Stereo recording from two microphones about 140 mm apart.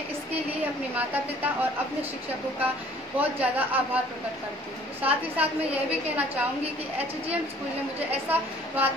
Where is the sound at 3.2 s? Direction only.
10° right (ahead or behind).